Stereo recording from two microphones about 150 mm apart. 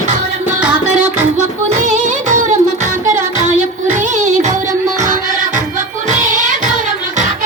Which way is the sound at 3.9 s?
55° right (ahead or behind).